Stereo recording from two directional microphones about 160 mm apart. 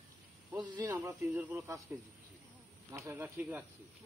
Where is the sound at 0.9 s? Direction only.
15° right (ahead or behind).